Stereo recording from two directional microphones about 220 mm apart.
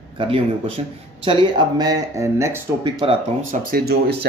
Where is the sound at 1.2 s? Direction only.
20° right (ahead or behind).